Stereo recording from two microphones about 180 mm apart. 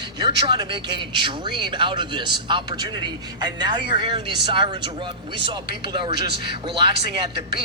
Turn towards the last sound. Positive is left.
turn(degrees=-25)  # may be behind; listen again after turning